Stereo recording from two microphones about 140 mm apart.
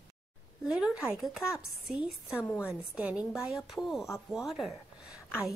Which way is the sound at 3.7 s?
Centre (ahead or behind).